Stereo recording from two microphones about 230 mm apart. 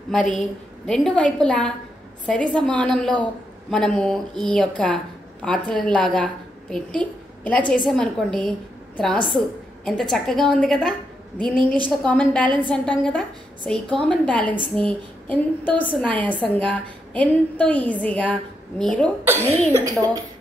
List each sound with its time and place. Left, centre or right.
0.1 s a woman's voice: centre
19.2 s a woman's voice: centre